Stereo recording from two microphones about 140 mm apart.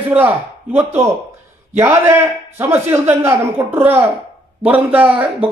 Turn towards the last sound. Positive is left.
turn(degrees=-10)  # may be behind; listen again after turning